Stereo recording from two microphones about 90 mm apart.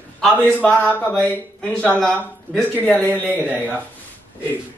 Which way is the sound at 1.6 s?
10° left (ahead or behind).